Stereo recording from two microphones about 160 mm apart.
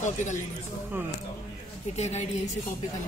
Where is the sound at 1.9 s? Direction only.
45° left (ahead or behind).